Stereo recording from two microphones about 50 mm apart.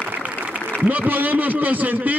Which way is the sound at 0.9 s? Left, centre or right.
Right.